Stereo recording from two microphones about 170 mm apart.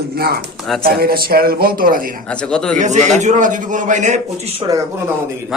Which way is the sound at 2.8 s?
45° right (ahead or behind).